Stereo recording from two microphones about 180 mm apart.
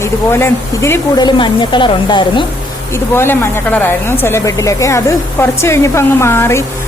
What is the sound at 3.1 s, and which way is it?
Speech, 15° left (ahead or behind).